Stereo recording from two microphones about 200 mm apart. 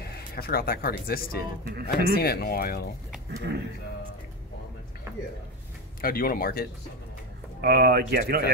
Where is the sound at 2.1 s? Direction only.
50° left (ahead or behind).